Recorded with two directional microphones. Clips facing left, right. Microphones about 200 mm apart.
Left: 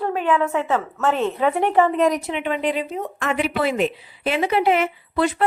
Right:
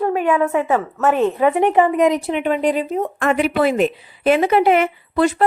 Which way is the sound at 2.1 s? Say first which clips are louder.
Right 4 dB; 30° right (ahead or behind).